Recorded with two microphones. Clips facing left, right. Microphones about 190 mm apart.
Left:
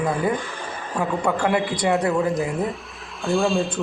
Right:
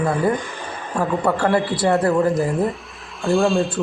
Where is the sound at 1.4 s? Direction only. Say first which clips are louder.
Right 3 dB; 20° left (ahead or behind).